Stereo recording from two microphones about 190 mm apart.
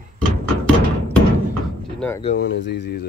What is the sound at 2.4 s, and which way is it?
Speech, 65° left (ahead or behind).